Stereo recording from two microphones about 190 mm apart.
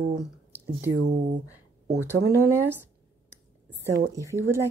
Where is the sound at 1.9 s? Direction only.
10° right (ahead or behind).